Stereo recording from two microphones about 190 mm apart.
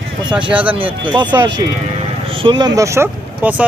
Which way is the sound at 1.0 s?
25° right (ahead or behind).